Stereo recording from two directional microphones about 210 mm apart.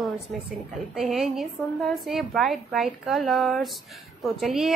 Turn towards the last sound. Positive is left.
turn(degrees=0)  # may be behind; listen again after turning